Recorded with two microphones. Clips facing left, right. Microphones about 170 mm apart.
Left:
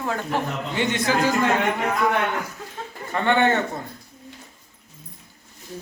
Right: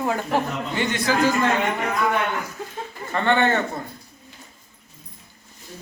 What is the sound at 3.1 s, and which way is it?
Speech, 15° left (ahead or behind).